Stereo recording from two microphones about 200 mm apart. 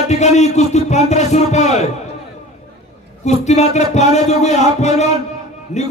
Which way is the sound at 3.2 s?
35° left (ahead or behind).